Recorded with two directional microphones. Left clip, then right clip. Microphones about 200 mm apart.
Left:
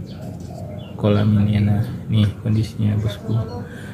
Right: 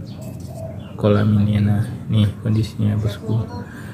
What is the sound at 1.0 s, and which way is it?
Speech, 5° right (ahead or behind).